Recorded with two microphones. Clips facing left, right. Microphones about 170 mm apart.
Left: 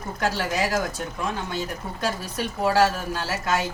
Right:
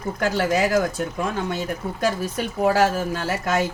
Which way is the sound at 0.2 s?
55° right (ahead or behind).